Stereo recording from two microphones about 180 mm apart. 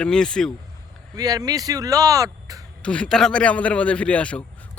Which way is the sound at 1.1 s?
20° right (ahead or behind).